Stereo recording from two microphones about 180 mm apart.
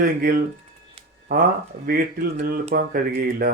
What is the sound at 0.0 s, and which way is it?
Speech, 55° right (ahead or behind).